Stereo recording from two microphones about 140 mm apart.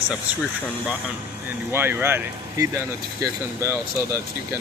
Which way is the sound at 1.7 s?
15° right (ahead or behind).